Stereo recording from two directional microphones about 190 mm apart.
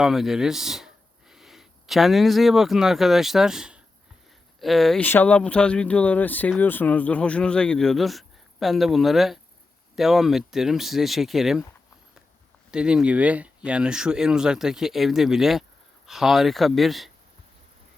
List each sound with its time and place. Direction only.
0.0 s speech: centre (ahead or behind)
12.7 s speech: 5° right (ahead or behind)